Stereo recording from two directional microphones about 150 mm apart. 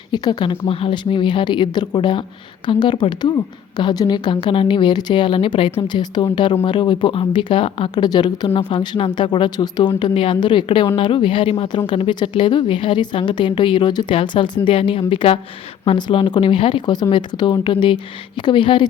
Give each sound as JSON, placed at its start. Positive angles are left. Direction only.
{"t": 0.1, "sound": "a woman's voice", "side_deg": 30}